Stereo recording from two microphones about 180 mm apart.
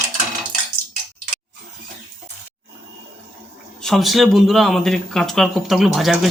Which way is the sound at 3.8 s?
Centre (ahead or behind).